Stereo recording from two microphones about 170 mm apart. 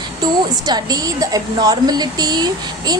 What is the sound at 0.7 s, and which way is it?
A woman's voice, 25° right (ahead or behind).